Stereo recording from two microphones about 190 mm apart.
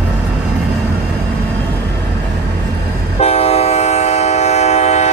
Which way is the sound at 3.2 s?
35° left (ahead or behind).